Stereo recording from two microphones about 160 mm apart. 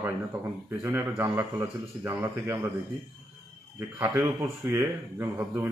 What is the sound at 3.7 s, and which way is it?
A man's voice, 15° right (ahead or behind).